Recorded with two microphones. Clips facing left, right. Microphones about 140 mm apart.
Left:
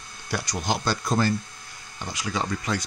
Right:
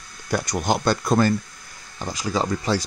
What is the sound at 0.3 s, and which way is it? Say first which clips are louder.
Speech: right 5 dB; 50° right (ahead or behind).